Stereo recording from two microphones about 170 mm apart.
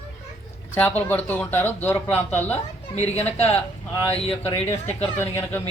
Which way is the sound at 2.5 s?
40° left (ahead or behind).